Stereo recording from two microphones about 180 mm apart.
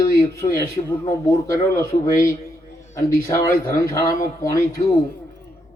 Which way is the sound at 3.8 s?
15° left (ahead or behind).